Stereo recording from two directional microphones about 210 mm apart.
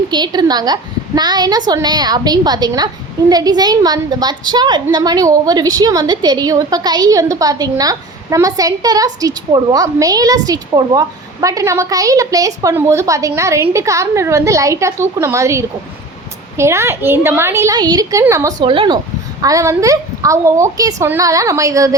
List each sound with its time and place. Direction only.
0.1 s a woman's voice: 20° right (ahead or behind)